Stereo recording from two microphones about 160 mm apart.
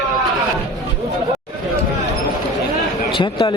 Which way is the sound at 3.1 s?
30° left (ahead or behind).